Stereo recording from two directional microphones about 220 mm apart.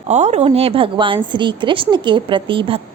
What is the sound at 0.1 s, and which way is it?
A woman's voice, 30° right (ahead or behind).